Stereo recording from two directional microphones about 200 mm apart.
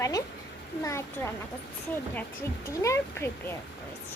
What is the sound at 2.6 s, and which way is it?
Speech, 15° left (ahead or behind).